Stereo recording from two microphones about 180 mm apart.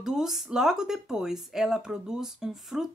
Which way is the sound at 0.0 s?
Centre (ahead or behind).